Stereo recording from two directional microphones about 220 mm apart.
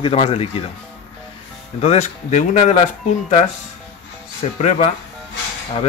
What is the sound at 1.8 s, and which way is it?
Speech, 30° left (ahead or behind).